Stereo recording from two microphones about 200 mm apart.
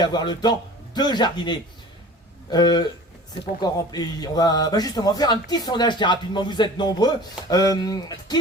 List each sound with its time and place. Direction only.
0.0 s a man's voice: 20° left (ahead or behind)